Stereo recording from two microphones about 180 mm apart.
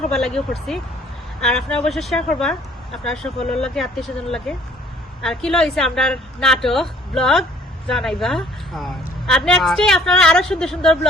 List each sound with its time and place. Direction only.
0.1 s a woman's voice: centre (ahead or behind)